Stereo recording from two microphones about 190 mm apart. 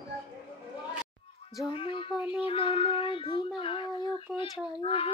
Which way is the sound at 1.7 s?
25° left (ahead or behind).